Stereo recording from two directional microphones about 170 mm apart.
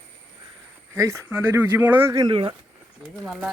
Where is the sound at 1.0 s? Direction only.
15° right (ahead or behind).